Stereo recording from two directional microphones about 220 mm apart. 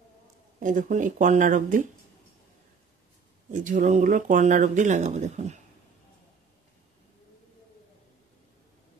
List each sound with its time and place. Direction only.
0.6 s speech: 35° right (ahead or behind)
3.5 s speech: 35° right (ahead or behind)